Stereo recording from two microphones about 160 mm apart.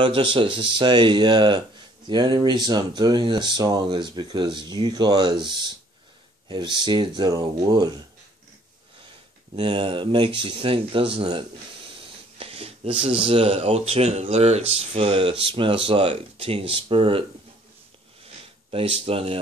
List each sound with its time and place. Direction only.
0.0 s speech: 35° right (ahead or behind)
9.6 s speech: 35° right (ahead or behind)
12.4 s a sound: 40° right (ahead or behind)
13.0 s speech: 35° right (ahead or behind)
19.0 s speech: 35° right (ahead or behind)